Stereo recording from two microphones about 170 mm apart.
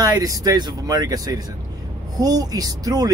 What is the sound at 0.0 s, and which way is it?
Speech, 20° right (ahead or behind).